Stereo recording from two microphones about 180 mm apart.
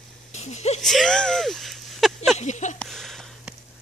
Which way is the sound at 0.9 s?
5° left (ahead or behind).